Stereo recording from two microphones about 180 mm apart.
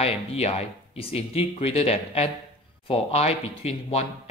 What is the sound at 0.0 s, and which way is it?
Speech, 35° left (ahead or behind).